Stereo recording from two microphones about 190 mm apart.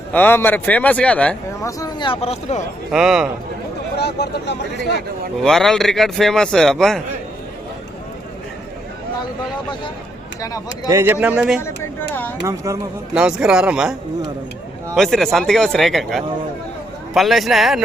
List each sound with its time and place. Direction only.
0.1 s speech: 10° left (ahead or behind)
1.8 s speech: 25° left (ahead or behind)
2.9 s speech: 5° right (ahead or behind)
3.9 s speech: 60° left (ahead or behind)
5.4 s speech: centre (ahead or behind)
10.8 s a man's voice: 15° right (ahead or behind)
11.6 s speech: 10° left (ahead or behind)
12.5 s a man's voice: 15° right (ahead or behind)
13.1 s speech: 5° right (ahead or behind)
14.9 s speech: centre (ahead or behind)